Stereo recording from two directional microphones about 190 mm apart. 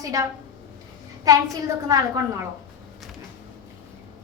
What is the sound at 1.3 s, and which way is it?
A woman's voice, 20° right (ahead or behind).